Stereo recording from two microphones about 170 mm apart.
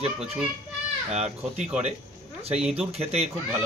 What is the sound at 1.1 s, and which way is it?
A man's voice, 40° right (ahead or behind).